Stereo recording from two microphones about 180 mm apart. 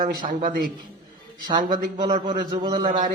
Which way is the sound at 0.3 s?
45° right (ahead or behind).